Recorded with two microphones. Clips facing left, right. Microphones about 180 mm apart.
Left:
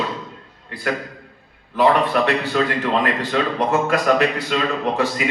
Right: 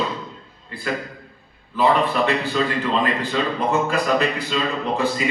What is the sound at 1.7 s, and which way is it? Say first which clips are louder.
A man's voice: left 2 dB; 65° left (ahead or behind).